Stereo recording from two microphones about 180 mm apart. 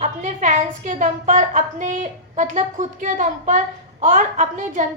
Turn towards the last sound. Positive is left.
turn(degrees=-45)  # may be behind; listen again after turning